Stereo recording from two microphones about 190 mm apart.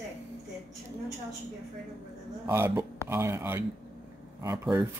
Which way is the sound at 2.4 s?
10° right (ahead or behind).